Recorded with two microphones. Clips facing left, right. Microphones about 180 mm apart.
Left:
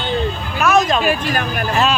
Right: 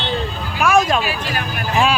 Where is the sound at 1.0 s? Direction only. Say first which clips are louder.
Left 5 dB; 50° left (ahead or behind).